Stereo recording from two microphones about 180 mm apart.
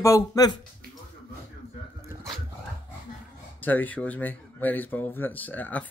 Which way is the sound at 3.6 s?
10° left (ahead or behind).